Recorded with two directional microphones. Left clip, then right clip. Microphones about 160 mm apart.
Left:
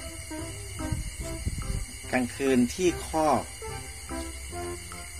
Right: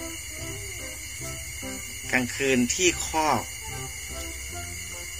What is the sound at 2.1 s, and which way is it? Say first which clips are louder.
Speech: right 2 dB; 30° left (ahead or behind).